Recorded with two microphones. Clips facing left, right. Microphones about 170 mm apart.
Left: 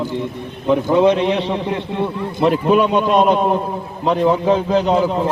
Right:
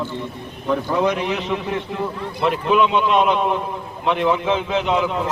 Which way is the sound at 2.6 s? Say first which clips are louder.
Even; 45° left (ahead or behind).